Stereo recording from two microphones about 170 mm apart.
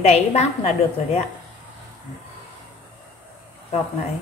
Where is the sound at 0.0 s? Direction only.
40° left (ahead or behind).